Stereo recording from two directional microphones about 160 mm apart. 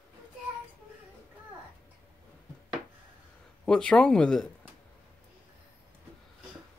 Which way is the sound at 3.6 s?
5° left (ahead or behind).